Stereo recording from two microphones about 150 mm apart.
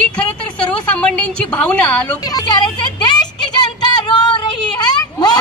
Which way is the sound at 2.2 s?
25° left (ahead or behind).